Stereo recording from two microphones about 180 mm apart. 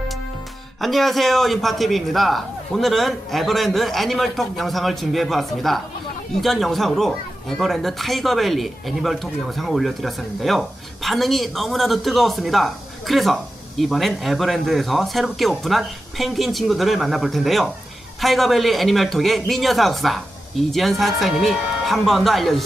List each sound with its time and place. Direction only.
0.8 s speech: centre (ahead or behind)